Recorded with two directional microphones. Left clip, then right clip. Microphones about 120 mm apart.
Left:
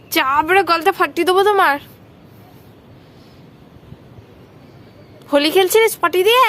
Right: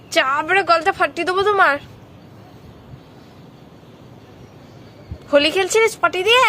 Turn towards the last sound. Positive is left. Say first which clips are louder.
# left 2 dB
turn(degrees=40)  # may be behind; listen again after turning